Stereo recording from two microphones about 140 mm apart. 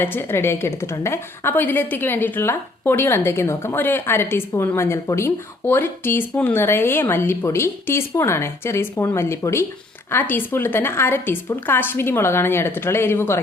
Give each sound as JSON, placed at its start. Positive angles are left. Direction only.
{"t": 0.0, "sound": "a woman's voice", "side_deg": 15}